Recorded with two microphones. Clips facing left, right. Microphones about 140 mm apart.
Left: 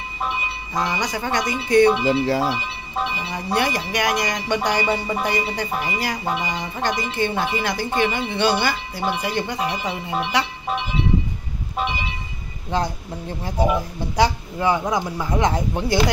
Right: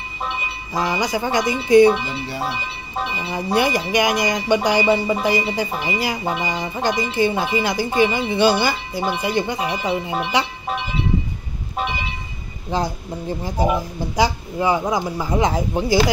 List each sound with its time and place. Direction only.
0.7 s speech: 5° right (ahead or behind)
2.0 s speech: 90° left
3.5 s speech: 5° right (ahead or behind)
12.7 s speech: 5° right (ahead or behind)